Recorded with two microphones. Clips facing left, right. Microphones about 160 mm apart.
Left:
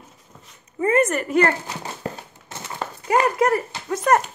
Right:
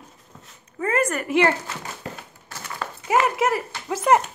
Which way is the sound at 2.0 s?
40° left (ahead or behind).